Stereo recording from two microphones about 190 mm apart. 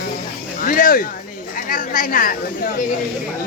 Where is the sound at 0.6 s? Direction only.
45° left (ahead or behind).